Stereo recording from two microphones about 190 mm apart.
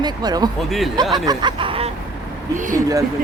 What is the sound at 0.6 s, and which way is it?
Speech, centre (ahead or behind).